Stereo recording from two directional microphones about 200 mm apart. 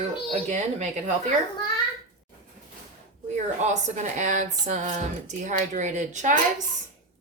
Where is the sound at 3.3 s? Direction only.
35° right (ahead or behind).